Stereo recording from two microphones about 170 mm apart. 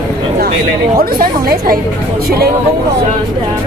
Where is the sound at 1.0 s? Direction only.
60° right (ahead or behind).